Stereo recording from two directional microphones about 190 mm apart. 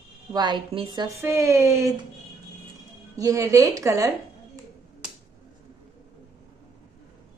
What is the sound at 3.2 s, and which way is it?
Speech, 15° right (ahead or behind).